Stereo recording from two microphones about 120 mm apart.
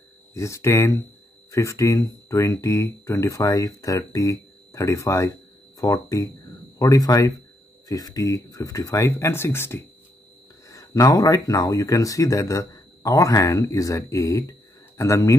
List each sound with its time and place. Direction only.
0.3 s speech: 25° left (ahead or behind)